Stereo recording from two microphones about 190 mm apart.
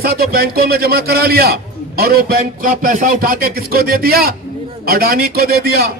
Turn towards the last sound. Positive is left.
turn(degrees=-55)  # may be behind; listen again after turning